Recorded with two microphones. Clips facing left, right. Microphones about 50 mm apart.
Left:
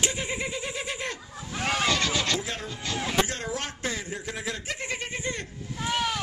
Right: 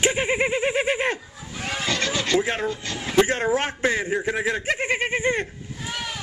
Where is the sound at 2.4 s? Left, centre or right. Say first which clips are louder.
Right 9 dB; right.